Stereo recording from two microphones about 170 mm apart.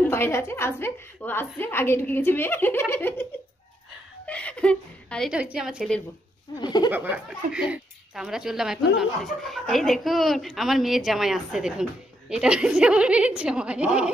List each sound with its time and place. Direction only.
0.0 s a woman's voice: 15° left (ahead or behind)
4.3 s a woman's voice: 5° left (ahead or behind)
5.3 s speech: 5° right (ahead or behind)
6.6 s speech: 25° left (ahead or behind)
6.9 s speech: 10° right (ahead or behind)